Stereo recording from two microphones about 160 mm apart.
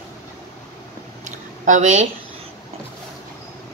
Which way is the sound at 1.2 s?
50° right (ahead or behind).